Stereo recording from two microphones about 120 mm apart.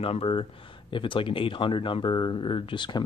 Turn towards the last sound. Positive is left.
turn(degrees=40)  # may be behind; listen again after turning